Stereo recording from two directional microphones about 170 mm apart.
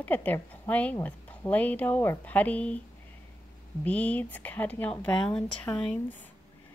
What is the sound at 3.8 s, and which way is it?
Speech, 10° left (ahead or behind).